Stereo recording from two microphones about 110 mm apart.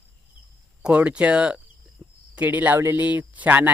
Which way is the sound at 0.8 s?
10° right (ahead or behind).